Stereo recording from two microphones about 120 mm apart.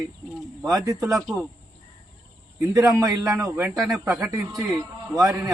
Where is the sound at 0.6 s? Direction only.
25° right (ahead or behind).